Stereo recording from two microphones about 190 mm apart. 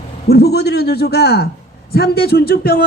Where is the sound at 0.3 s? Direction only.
60° left (ahead or behind).